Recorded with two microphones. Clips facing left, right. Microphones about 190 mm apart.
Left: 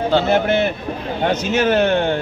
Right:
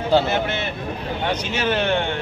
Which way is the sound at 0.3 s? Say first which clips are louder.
Left 7 dB; 50° left (ahead or behind).